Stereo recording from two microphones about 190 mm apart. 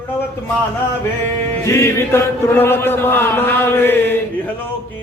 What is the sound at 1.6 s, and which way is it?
Mantra, 15° left (ahead or behind).